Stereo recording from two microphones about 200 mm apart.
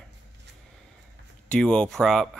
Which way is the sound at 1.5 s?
5° left (ahead or behind).